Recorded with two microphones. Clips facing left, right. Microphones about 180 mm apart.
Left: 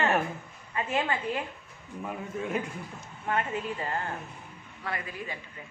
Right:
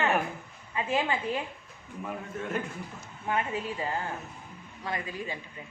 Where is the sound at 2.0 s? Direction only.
5° left (ahead or behind).